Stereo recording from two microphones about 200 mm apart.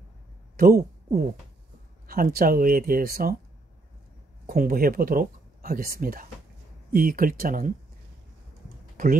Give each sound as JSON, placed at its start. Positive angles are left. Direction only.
{"t": 0.6, "sound": "speech", "side_deg": -50}
{"t": 4.5, "sound": "speech", "side_deg": -45}